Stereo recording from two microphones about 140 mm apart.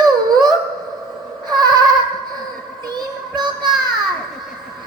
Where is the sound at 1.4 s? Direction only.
30° right (ahead or behind).